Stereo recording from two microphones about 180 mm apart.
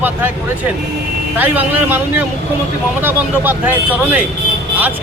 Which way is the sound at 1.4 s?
10° right (ahead or behind).